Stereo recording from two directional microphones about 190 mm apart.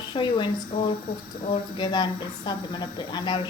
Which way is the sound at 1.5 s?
25° left (ahead or behind).